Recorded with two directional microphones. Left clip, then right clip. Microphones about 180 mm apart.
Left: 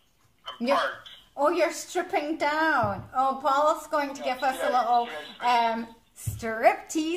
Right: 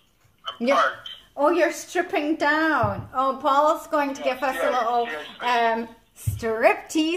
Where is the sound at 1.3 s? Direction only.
15° right (ahead or behind).